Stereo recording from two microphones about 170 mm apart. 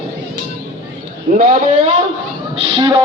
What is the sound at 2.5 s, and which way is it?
Speech, 25° right (ahead or behind).